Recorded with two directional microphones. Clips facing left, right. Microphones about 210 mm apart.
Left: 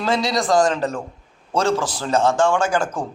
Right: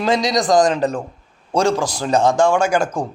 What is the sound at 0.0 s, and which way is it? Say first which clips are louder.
A man's voice: right 3 dB; 15° right (ahead or behind).